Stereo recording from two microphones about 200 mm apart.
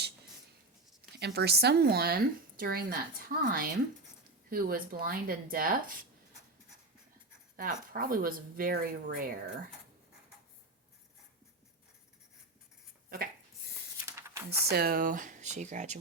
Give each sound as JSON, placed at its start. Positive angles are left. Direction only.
{"t": 1.1, "sound": "speech", "side_deg": -55}
{"t": 7.5, "sound": "speech", "side_deg": -45}
{"t": 14.0, "sound": "a sound", "side_deg": -15}
{"t": 14.6, "sound": "speech", "side_deg": -50}